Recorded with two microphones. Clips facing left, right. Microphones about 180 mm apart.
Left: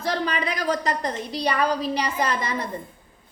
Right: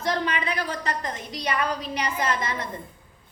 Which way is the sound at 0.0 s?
35° left (ahead or behind).